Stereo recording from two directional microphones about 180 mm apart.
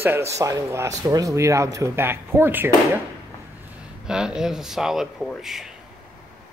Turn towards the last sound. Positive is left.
turn(degrees=0)  # may be behind; listen again after turning